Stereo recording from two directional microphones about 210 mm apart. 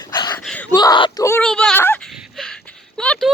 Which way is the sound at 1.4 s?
Centre (ahead or behind).